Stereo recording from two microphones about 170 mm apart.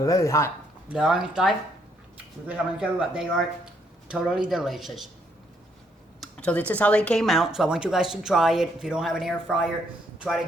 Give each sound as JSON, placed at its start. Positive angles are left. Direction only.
{"t": 0.0, "sound": "speech", "side_deg": 20}
{"t": 0.9, "sound": "speech", "side_deg": -5}
{"t": 6.1, "sound": "speech", "side_deg": 5}